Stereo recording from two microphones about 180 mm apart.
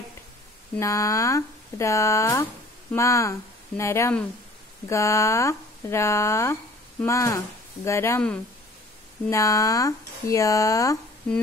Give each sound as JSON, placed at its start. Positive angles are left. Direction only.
{"t": 0.7, "sound": "speech", "side_deg": 15}